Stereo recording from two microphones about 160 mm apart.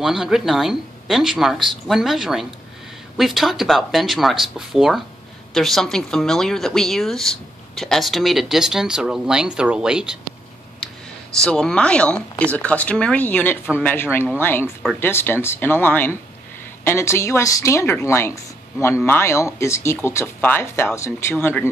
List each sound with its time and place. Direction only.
0.0 s a woman's voice: centre (ahead or behind)
11.4 s speech: 5° left (ahead or behind)